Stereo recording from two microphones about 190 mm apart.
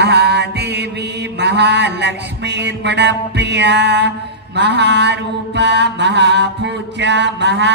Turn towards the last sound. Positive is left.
turn(degrees=-65)  # may be behind; listen again after turning